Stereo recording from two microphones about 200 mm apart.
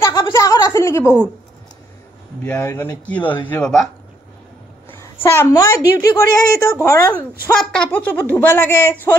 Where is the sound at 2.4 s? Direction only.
10° left (ahead or behind).